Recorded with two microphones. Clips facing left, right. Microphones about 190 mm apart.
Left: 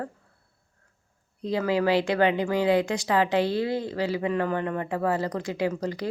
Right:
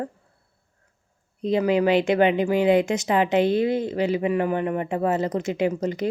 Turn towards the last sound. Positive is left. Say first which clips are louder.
# right 4 dB
turn(degrees=-20)  # may be behind; listen again after turning